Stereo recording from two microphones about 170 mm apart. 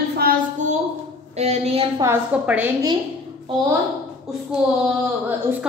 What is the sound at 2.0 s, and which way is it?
Speech, 10° right (ahead or behind).